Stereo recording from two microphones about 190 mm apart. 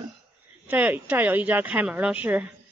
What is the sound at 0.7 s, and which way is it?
A woman's voice, 10° right (ahead or behind).